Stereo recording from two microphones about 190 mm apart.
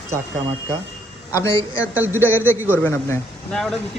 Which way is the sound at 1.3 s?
15° left (ahead or behind).